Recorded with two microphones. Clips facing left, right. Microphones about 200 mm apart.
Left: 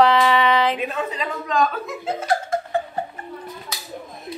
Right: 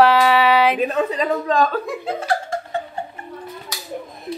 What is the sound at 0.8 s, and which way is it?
Speech, 40° right (ahead or behind).